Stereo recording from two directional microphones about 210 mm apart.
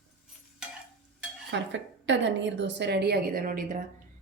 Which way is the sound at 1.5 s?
60° right (ahead or behind).